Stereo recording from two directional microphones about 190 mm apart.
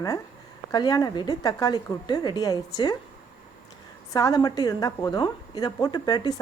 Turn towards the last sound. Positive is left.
turn(degrees=20)  # may be behind; listen again after turning